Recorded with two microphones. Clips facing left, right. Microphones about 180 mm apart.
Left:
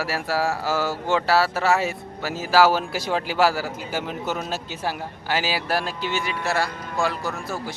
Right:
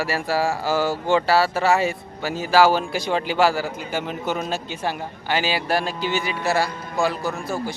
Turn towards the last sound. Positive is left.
turn(degrees=0)  # may be behind; listen again after turning